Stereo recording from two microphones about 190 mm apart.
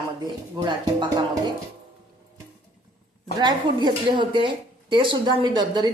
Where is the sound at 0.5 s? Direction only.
25° right (ahead or behind).